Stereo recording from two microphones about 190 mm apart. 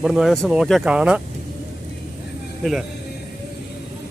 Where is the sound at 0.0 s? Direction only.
Centre (ahead or behind).